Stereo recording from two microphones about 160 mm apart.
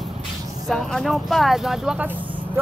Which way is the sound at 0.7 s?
5° left (ahead or behind).